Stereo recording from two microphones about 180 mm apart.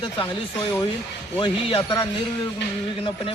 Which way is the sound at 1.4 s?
25° left (ahead or behind).